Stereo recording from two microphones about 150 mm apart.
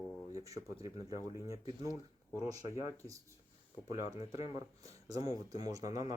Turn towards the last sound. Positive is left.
turn(degrees=-25)  # may be behind; listen again after turning